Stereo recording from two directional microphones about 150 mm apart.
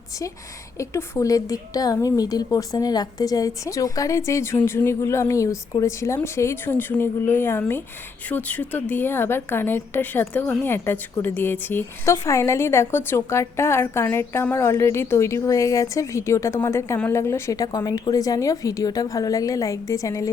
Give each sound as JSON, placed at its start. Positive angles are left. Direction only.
{"t": 0.8, "sound": "a woman's voice", "side_deg": 20}